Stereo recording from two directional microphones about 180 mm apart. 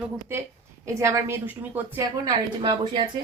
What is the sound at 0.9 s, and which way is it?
A woman's voice, 15° right (ahead or behind).